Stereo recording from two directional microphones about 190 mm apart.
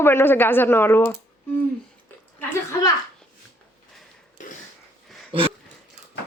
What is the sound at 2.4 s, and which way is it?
Speech, 10° left (ahead or behind).